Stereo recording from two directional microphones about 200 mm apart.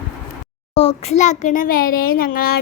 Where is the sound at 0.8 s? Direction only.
30° left (ahead or behind); by 2.5 s 45° left (ahead or behind).